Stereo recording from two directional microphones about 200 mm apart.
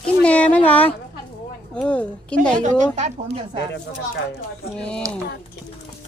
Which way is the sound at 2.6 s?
35° right (ahead or behind).